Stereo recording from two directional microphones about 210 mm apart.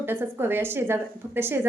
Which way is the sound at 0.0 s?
10° right (ahead or behind).